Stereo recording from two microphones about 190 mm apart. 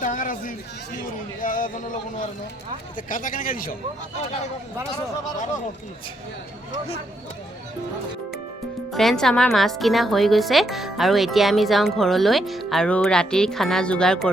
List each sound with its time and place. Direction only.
0.0 s speech: 45° left (ahead or behind)
3.1 s speech: 45° left (ahead or behind)
4.2 s speech: 35° left (ahead or behind)
8.9 s a woman's voice: centre (ahead or behind)